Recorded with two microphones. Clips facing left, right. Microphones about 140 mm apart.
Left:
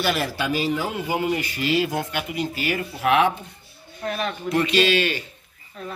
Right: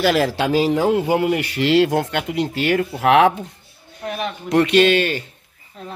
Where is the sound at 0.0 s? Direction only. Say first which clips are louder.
Right 7 dB; 90° right.